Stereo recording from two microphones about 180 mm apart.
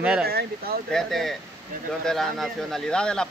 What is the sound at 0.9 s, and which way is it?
Speech, centre (ahead or behind).